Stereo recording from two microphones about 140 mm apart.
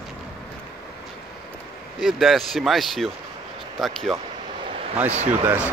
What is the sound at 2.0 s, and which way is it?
A man's voice, centre (ahead or behind).